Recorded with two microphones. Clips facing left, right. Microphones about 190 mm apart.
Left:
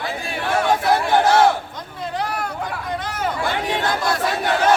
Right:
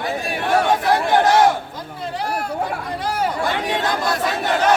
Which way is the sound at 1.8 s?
30° right (ahead or behind).